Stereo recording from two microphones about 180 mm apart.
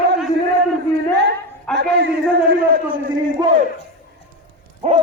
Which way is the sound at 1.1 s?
70° right (ahead or behind).